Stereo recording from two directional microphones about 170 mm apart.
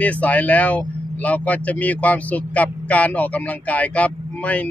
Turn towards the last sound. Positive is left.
turn(degrees=10)  # may be behind; listen again after turning